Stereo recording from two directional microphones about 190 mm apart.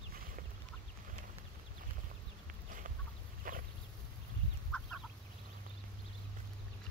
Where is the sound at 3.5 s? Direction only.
45° right (ahead or behind).